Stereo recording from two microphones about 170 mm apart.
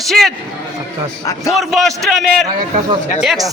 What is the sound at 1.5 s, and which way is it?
Speech, centre (ahead or behind).